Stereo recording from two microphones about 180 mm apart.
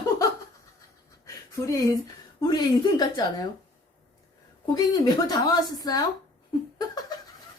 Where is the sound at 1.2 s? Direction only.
20° left (ahead or behind).